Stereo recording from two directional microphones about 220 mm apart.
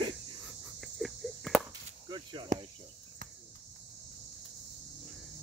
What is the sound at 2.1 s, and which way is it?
Cricket, 20° right (ahead or behind).